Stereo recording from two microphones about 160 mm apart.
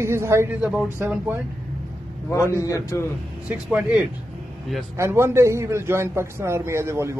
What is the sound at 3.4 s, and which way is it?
A man's voice, 10° right (ahead or behind).